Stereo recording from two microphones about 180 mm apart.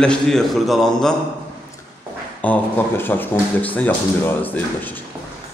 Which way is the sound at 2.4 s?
10° left (ahead or behind).